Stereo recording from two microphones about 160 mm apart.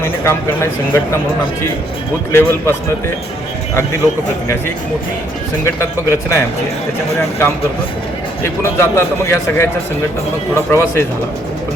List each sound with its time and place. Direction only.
0.0 s speech: 15° left (ahead or behind)
2.3 s speech: 15° left (ahead or behind)
5.6 s speech: 20° left (ahead or behind)
8.6 s speech: 15° left (ahead or behind)